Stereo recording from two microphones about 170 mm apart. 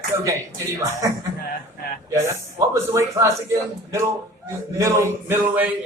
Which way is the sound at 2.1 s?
20° right (ahead or behind).